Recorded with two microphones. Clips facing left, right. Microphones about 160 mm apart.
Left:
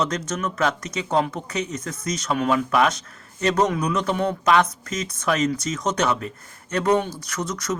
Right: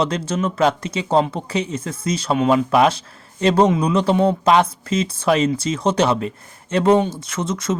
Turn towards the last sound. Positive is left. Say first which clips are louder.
# right 4 dB
turn(degrees=-25)  # may be behind; listen again after turning